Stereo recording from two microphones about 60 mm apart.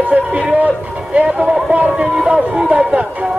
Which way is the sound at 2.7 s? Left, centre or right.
Centre.